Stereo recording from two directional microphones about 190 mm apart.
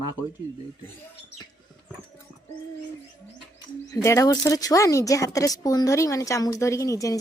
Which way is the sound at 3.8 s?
15° left (ahead or behind).